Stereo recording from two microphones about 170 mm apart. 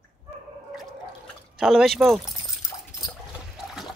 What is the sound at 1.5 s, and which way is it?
Speech, centre (ahead or behind).